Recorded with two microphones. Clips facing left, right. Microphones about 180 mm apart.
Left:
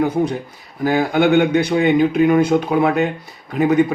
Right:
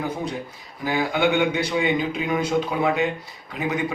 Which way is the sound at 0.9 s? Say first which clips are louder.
Left 6 dB; 55° left (ahead or behind).